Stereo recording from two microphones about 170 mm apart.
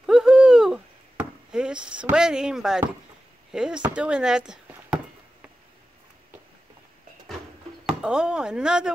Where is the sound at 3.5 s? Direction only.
5° right (ahead or behind).